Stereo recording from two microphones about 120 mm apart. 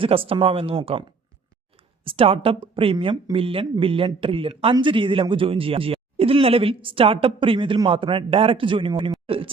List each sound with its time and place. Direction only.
0.0 s speech: 50° right (ahead or behind)